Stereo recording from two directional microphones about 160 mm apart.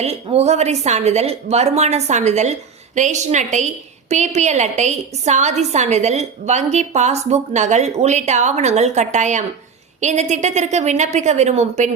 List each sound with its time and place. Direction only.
0.0 s a woman's voice: 40° right (ahead or behind)